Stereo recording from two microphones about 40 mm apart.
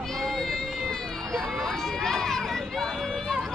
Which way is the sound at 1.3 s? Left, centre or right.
Centre.